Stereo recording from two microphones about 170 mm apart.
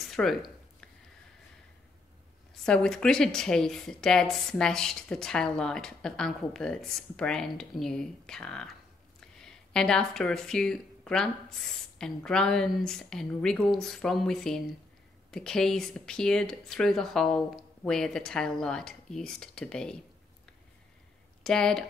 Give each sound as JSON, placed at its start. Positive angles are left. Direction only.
{"t": 0.0, "sound": "a sound", "side_deg": 0}
{"t": 2.5, "sound": "speech", "side_deg": 5}
{"t": 21.4, "sound": "speech", "side_deg": 5}